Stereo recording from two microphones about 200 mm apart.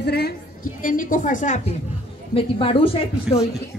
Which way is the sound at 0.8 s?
40° left (ahead or behind).